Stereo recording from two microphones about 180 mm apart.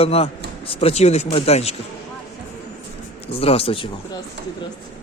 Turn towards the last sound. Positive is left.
turn(degrees=30)  # may be behind; listen again after turning